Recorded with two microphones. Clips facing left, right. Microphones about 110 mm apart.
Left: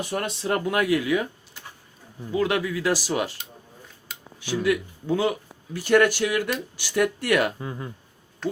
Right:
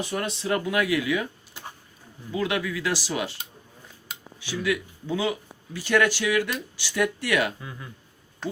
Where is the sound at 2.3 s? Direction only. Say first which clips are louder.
Left 3 dB; 35° left (ahead or behind).